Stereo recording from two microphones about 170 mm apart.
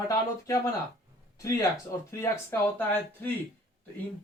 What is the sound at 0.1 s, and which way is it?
Speech, 15° left (ahead or behind).